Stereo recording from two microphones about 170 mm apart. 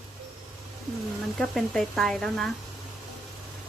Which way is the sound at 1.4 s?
Centre (ahead or behind).